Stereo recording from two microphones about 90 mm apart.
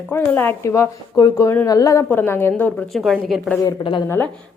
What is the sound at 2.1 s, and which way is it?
Speech, 25° left (ahead or behind).